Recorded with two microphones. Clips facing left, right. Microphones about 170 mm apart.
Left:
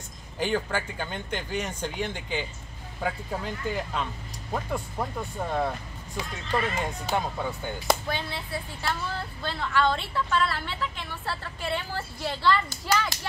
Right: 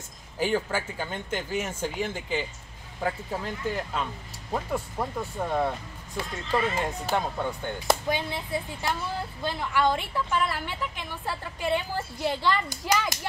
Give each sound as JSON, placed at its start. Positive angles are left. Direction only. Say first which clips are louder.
{"t": 0.4, "sound": "speech", "louder": "right 1 dB", "side_deg": -5}
{"t": 8.1, "sound": "a woman's voice", "louder": "right 3 dB", "side_deg": -15}